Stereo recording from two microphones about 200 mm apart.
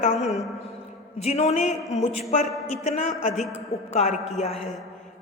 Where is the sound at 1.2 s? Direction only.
30° left (ahead or behind).